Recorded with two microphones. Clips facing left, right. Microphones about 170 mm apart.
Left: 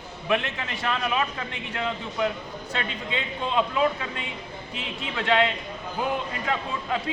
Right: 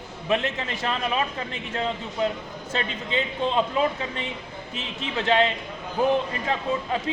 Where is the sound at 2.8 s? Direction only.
30° right (ahead or behind).